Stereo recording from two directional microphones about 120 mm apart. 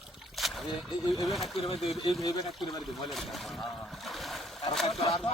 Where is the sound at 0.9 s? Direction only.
45° left (ahead or behind).